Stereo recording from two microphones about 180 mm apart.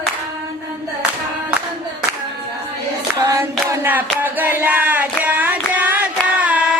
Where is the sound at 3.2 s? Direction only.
20° right (ahead or behind).